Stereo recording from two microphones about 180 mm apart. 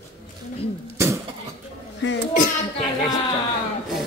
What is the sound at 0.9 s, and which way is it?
Cough, 15° right (ahead or behind).